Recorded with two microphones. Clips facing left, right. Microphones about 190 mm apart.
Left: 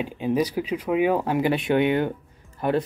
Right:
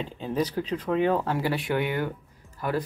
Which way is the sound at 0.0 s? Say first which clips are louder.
Left 5 dB; 10° left (ahead or behind).